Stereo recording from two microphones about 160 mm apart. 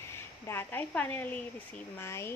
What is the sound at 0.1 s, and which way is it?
Speech, 15° left (ahead or behind).